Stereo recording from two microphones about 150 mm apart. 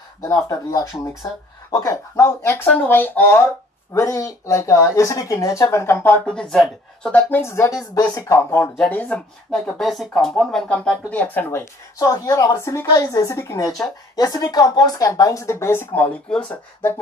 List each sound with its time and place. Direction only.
0.2 s speech: 20° left (ahead or behind)
8.7 s speech: 5° left (ahead or behind)